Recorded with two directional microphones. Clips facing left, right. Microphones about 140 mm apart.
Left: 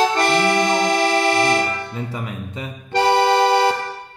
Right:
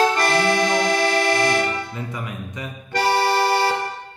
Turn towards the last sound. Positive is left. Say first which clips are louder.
# left 4 dB
turn(degrees=20)  # may be behind; listen again after turning